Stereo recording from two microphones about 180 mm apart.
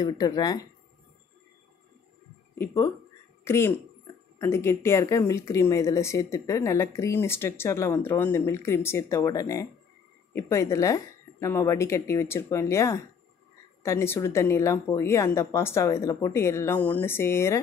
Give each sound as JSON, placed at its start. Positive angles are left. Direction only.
{"t": 0.0, "sound": "speech", "side_deg": 20}
{"t": 2.6, "sound": "speech", "side_deg": 15}